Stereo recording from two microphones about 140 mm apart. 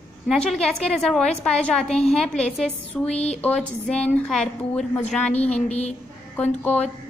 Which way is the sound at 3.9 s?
10° left (ahead or behind).